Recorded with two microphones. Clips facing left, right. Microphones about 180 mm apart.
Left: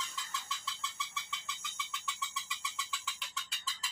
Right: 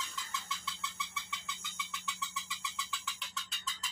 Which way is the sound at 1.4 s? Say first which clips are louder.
Even; centre (ahead or behind).